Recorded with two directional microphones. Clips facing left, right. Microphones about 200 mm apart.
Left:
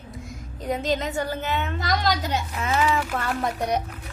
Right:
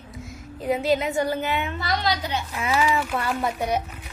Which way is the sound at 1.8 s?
45° left (ahead or behind).